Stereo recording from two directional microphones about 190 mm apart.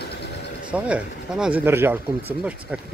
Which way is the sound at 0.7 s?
5° right (ahead or behind).